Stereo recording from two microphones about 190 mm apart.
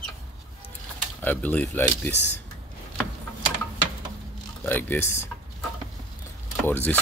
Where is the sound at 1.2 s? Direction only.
10° left (ahead or behind).